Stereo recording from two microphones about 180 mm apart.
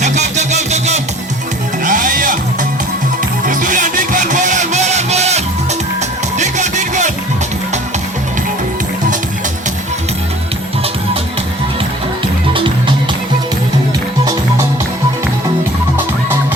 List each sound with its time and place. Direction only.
0.0 s music: 40° right (ahead or behind)
3.4 s music: 45° right (ahead or behind)